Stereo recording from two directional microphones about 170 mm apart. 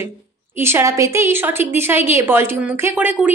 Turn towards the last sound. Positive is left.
turn(degrees=-10)  # may be behind; listen again after turning